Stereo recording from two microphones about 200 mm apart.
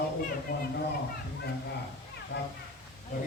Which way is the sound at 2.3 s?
60° left (ahead or behind).